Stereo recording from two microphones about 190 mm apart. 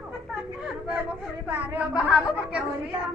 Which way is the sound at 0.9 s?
10° right (ahead or behind).